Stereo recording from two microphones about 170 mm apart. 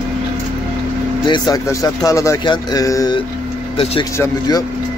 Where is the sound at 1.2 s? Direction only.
25° left (ahead or behind).